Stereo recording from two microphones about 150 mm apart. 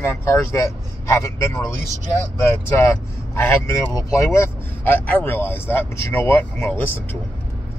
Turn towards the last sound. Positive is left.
turn(degrees=10)  # may be behind; listen again after turning